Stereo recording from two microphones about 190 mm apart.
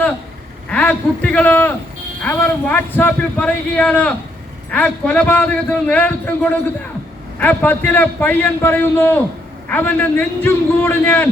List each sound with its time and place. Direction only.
0.7 s a man's voice: 5° left (ahead or behind)